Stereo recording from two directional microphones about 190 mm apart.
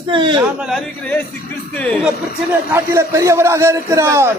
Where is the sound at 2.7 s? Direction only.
15° right (ahead or behind).